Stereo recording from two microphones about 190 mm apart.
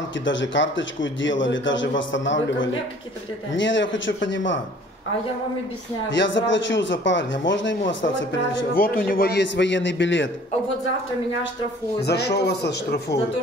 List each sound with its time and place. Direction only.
0.2 s a man's voice: 75° left (ahead or behind)
6.0 s a man's voice: 75° left (ahead or behind)
8.7 s a man's voice: 50° left (ahead or behind); by 10.3 s 75° left (ahead or behind)
12.0 s speech: 60° left (ahead or behind)